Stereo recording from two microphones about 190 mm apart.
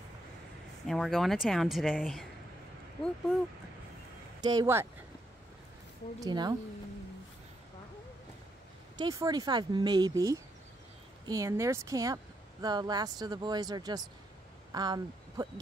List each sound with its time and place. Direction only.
0.8 s speech: centre (ahead or behind)
4.4 s speech: 20° right (ahead or behind)
6.1 s speech: 20° right (ahead or behind)
8.9 s speech: 20° right (ahead or behind)